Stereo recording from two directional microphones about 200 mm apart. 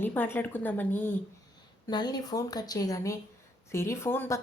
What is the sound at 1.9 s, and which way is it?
A woman's voice, 20° left (ahead or behind).